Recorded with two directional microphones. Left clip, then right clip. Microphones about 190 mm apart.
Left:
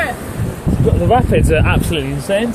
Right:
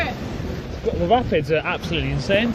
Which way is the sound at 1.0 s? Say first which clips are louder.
Left 4 dB; 55° left (ahead or behind).